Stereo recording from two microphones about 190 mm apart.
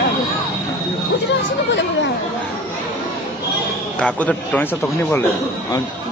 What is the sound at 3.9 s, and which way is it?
A man's voice, 5° left (ahead or behind).